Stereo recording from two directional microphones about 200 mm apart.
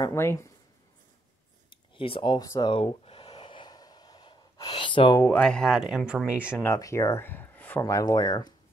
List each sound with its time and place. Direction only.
0.0 s speech: 10° left (ahead or behind)
2.0 s speech: 25° left (ahead or behind)
2.7 s gasp: 30° left (ahead or behind)
5.2 s speech: 5° left (ahead or behind)
6.6 s speech: 15° left (ahead or behind)